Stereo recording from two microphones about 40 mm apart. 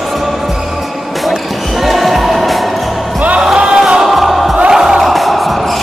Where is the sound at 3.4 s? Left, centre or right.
Centre.